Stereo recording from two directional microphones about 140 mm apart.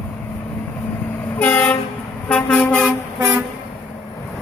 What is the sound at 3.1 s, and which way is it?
Vehicle, 20° right (ahead or behind).